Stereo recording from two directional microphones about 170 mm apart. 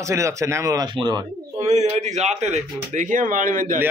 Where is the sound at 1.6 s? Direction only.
40° right (ahead or behind).